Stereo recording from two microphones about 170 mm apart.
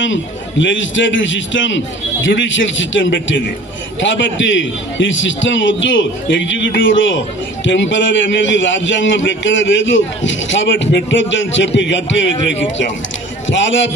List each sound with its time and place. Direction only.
0.0 s a man's voice: 90° left